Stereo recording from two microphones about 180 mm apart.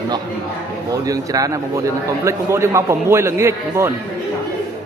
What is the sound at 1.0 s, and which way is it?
A man's voice, 20° right (ahead or behind).